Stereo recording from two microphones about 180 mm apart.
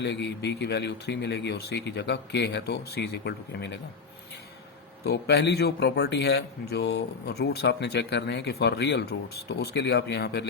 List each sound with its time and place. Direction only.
0.0 s a man's voice: 70° left (ahead or behind)
5.0 s a man's voice: 70° left (ahead or behind)